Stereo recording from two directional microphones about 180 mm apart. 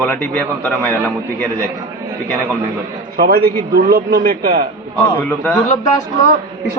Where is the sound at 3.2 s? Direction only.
55° right (ahead or behind).